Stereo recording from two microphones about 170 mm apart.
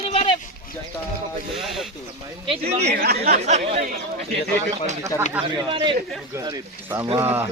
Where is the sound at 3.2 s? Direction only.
40° right (ahead or behind).